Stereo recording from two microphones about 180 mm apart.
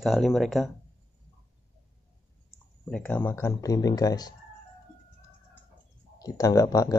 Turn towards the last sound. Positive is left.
turn(degrees=20)  # may be behind; listen again after turning